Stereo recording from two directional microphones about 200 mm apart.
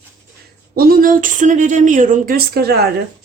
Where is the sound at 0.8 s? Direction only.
45° right (ahead or behind).